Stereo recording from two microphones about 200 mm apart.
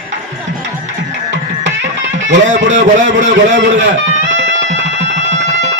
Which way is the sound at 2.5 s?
60° right (ahead or behind).